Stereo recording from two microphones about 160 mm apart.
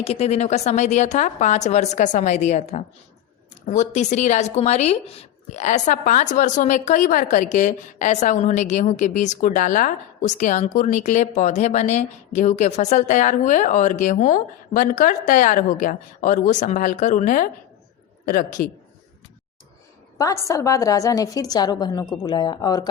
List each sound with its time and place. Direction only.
0.0 s a woman's voice: 40° left (ahead or behind); by 18.7 s 60° left (ahead or behind)
20.1 s a woman's voice: 20° left (ahead or behind)